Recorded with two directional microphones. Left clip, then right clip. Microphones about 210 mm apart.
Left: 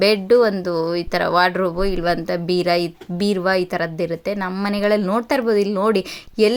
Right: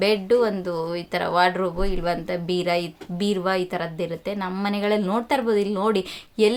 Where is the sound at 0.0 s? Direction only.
30° left (ahead or behind).